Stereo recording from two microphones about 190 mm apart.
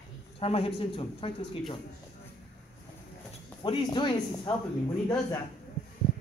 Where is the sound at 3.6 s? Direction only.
25° left (ahead or behind).